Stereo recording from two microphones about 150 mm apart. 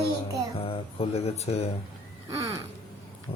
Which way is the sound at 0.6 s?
40° left (ahead or behind).